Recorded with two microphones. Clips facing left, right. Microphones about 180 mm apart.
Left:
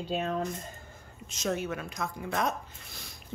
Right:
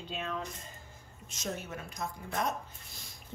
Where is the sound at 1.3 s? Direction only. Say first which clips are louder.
Left 7 dB; 90° left.